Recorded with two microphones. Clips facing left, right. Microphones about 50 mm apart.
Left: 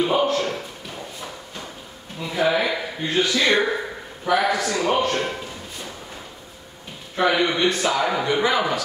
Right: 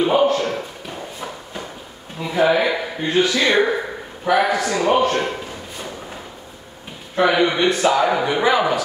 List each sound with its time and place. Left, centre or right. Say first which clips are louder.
0.0 s a sound: right 4 dB; centre
2.1 s speech: right 4 dB; centre
7.2 s a man's voice: right 3 dB; centre